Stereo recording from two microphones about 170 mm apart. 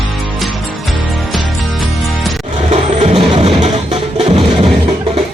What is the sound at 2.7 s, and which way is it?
Music, 40° right (ahead or behind).